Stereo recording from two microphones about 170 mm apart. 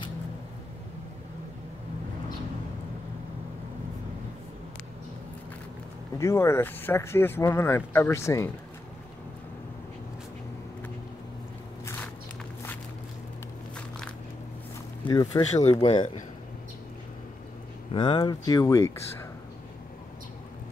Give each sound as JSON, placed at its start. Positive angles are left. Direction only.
{"t": 6.1, "sound": "speech", "side_deg": 15}
{"t": 11.8, "sound": "walk", "side_deg": 15}
{"t": 15.0, "sound": "speech", "side_deg": 25}
{"t": 15.6, "sound": "speech", "side_deg": 35}
{"t": 17.9, "sound": "speech", "side_deg": 30}